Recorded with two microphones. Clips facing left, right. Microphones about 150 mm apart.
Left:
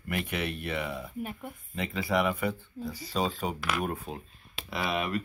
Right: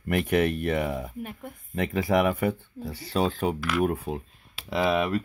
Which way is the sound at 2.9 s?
60° right (ahead or behind).